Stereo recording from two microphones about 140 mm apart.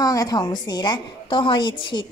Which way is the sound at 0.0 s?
25° left (ahead or behind).